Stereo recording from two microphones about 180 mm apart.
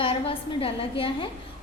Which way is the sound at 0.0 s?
30° left (ahead or behind).